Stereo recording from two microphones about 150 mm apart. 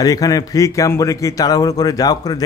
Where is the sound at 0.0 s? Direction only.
25° left (ahead or behind).